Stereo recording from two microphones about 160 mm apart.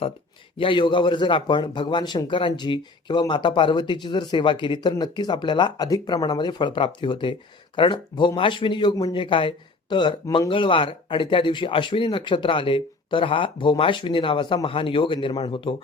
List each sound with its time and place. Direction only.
0.5 s a man's voice: 30° left (ahead or behind)